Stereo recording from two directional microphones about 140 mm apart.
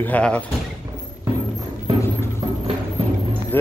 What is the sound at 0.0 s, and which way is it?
Speech, 10° left (ahead or behind).